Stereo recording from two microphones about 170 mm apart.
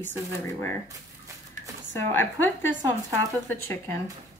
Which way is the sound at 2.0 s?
15° left (ahead or behind).